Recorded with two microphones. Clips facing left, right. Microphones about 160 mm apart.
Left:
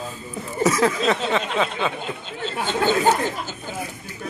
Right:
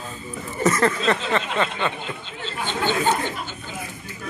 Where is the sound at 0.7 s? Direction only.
5° left (ahead or behind).